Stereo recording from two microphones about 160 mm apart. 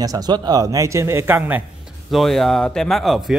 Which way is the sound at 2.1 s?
Centre (ahead or behind).